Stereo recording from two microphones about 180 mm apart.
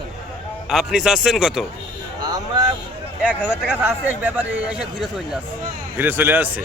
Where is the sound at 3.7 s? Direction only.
10° right (ahead or behind).